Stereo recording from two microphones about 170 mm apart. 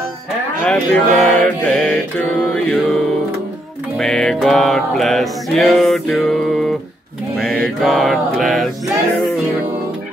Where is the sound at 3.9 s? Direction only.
5° left (ahead or behind).